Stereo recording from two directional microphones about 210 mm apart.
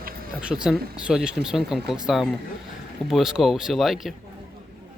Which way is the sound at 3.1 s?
Centre (ahead or behind).